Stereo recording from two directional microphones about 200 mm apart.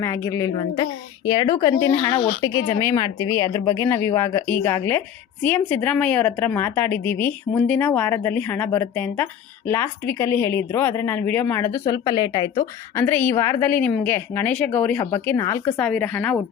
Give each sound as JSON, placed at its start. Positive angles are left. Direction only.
{"t": 0.0, "sound": "a woman's voice", "side_deg": 15}
{"t": 2.0, "sound": "a woman's voice", "side_deg": 25}
{"t": 2.5, "sound": "speech", "side_deg": 15}
{"t": 13.1, "sound": "a woman's voice", "side_deg": 10}